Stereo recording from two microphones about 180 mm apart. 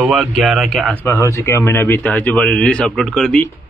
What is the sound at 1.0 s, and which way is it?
Speech, 15° left (ahead or behind).